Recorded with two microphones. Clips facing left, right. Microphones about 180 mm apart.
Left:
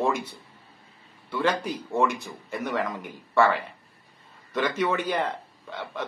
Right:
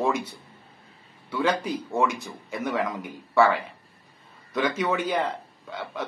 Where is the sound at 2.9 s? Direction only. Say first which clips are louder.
Right 2 dB; centre (ahead or behind).